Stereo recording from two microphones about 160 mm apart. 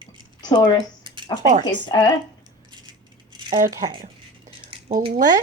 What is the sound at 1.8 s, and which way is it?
Speech, 25° left (ahead or behind).